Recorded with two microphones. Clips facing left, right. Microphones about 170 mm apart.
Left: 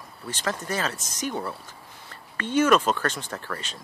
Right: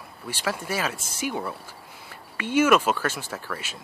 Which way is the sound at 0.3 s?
10° right (ahead or behind).